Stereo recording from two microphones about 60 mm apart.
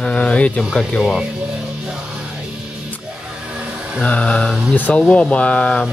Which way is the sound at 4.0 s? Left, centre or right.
Left.